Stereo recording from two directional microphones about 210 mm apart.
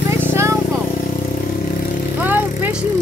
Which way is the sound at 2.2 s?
10° right (ahead or behind).